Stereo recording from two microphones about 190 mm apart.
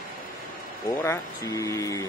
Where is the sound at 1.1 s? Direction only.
15° left (ahead or behind).